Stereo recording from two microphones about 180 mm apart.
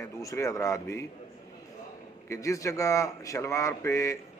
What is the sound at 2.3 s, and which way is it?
A man's voice, 15° left (ahead or behind).